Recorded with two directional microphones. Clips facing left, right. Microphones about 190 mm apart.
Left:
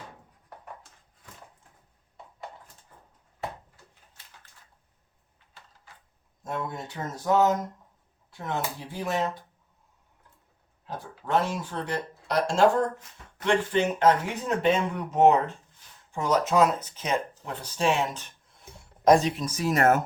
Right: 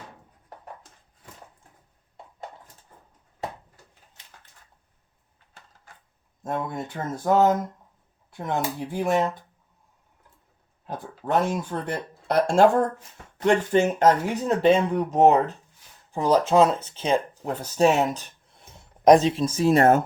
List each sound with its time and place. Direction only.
6.4 s speech: 50° right (ahead or behind)
10.8 s speech: 50° right (ahead or behind); by 17.5 s 30° right (ahead or behind)
17.5 s speech: 40° right (ahead or behind)
19.0 s speech: 20° right (ahead or behind)